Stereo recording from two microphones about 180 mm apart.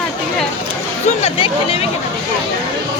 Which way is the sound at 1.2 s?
30° left (ahead or behind).